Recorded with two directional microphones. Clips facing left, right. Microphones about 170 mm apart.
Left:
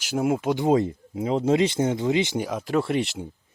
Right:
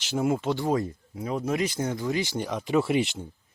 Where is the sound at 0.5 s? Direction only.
20° left (ahead or behind).